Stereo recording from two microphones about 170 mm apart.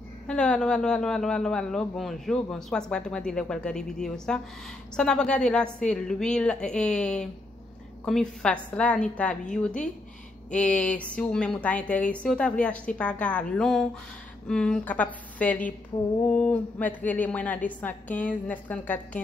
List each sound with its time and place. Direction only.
0.3 s a man's voice: 5° left (ahead or behind)